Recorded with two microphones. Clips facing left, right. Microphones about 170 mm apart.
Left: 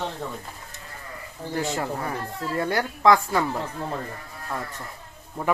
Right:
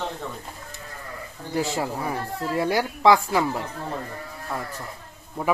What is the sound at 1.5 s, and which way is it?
Speech, 15° right (ahead or behind).